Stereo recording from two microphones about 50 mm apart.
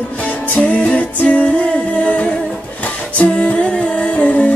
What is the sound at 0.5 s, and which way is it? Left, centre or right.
Music, left.